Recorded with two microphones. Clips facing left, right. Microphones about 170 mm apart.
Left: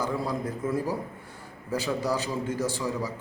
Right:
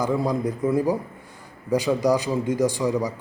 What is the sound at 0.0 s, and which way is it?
A man's voice, 15° right (ahead or behind).